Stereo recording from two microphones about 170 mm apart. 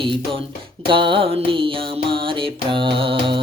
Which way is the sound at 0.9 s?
30° right (ahead or behind).